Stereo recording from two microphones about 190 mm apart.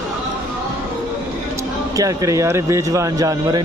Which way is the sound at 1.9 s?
15° right (ahead or behind).